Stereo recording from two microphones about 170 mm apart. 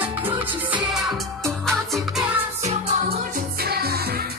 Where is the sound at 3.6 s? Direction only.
65° right (ahead or behind).